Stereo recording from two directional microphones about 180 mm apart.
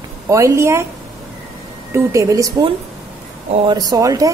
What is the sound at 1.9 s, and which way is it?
Speech, 15° right (ahead or behind).